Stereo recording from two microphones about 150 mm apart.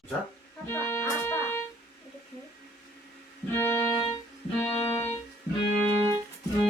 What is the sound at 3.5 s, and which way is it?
Music, 15° left (ahead or behind).